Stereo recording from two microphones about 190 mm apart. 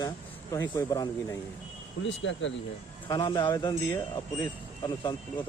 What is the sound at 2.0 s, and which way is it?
Speech, 75° left (ahead or behind).